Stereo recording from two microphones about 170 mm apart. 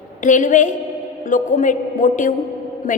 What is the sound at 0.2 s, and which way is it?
A woman's voice, 50° left (ahead or behind).